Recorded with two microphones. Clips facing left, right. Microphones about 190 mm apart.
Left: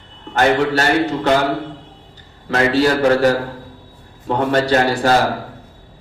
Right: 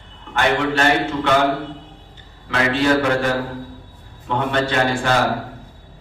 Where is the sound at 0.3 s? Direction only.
40° left (ahead or behind).